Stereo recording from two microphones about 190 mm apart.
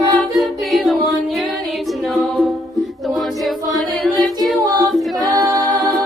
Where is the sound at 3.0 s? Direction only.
Centre (ahead or behind).